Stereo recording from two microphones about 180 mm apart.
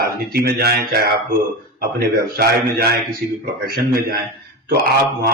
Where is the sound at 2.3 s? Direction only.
60° right (ahead or behind).